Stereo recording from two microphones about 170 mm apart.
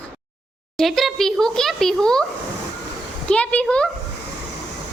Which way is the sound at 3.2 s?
5° left (ahead or behind).